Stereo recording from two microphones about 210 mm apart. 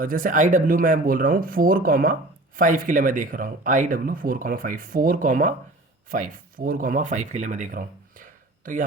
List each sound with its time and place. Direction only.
0.0 s speech: 40° right (ahead or behind)